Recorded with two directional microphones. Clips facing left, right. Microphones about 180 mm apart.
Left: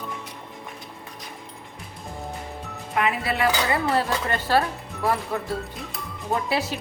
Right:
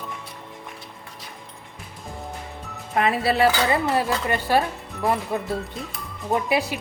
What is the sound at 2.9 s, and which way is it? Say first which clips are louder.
Music: right 3 dB; 35° right (ahead or behind).